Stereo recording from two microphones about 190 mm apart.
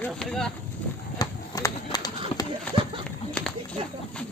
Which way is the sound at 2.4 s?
20° left (ahead or behind).